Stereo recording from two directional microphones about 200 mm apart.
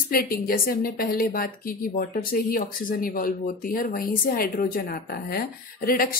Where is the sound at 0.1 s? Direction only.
45° left (ahead or behind).